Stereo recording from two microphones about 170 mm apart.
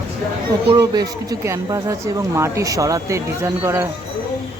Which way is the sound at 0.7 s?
20° right (ahead or behind).